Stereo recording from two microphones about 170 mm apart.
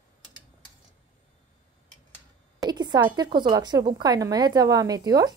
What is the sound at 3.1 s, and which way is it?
A woman's voice, 25° right (ahead or behind).